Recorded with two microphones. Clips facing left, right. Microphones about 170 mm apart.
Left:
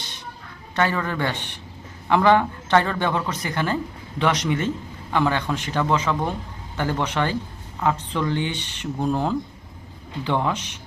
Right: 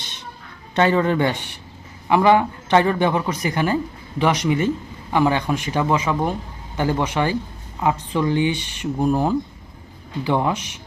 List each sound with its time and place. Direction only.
0.8 s a man's voice: 20° right (ahead or behind)